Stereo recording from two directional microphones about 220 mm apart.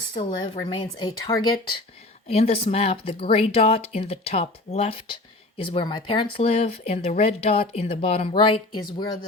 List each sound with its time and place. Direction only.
0.1 s speech: 20° left (ahead or behind)